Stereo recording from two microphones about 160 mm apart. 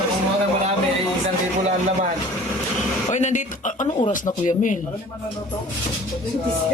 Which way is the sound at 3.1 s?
45° left (ahead or behind).